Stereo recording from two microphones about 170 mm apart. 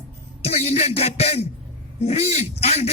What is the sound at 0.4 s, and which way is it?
Speech, 35° left (ahead or behind).